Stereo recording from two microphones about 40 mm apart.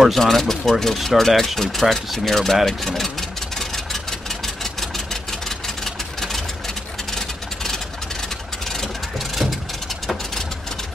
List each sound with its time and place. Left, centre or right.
0.2 s speech: centre
4.7 s engine: centre
7.1 s vehicle: centre
9.3 s vehicle: centre